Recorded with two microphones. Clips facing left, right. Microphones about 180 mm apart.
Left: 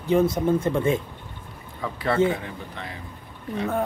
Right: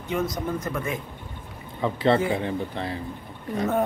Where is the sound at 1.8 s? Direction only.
25° right (ahead or behind).